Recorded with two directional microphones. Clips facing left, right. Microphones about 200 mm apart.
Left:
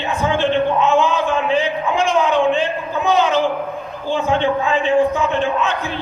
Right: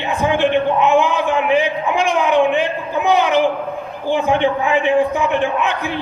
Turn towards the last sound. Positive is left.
turn(degrees=-15)  # may be behind; listen again after turning